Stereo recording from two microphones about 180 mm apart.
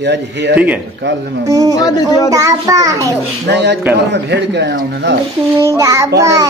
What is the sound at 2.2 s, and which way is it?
Child singing, 20° right (ahead or behind).